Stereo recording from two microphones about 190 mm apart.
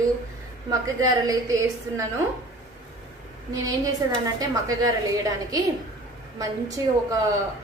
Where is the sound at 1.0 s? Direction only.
20° right (ahead or behind).